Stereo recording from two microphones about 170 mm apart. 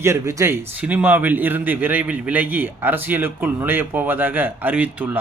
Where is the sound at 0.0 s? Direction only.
15° right (ahead or behind).